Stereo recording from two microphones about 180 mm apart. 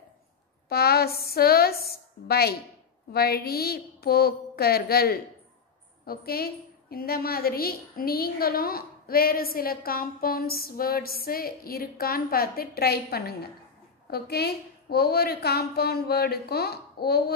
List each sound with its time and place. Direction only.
0.7 s a woman's voice: 60° left (ahead or behind)